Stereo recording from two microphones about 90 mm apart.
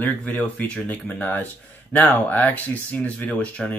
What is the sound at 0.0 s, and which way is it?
Speech, 20° left (ahead or behind).